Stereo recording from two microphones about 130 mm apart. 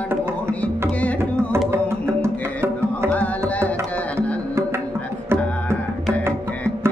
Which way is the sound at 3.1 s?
10° left (ahead or behind).